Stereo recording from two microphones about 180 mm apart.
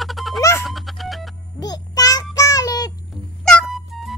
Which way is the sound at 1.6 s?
20° left (ahead or behind).